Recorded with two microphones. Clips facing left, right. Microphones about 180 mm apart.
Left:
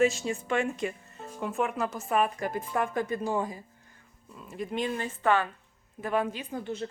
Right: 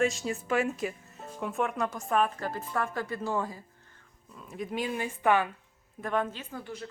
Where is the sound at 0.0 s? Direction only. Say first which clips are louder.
Left 3 dB; centre (ahead or behind); by 3.6 s 15° left (ahead or behind).